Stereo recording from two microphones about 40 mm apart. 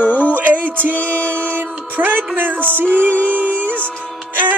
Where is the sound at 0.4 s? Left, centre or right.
Right.